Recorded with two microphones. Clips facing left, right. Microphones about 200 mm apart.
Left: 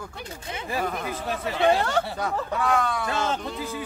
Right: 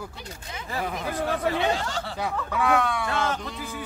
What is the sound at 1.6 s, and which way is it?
Speech, 60° left (ahead or behind).